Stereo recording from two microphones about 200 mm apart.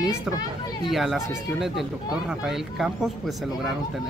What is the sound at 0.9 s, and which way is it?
A man's voice, centre (ahead or behind).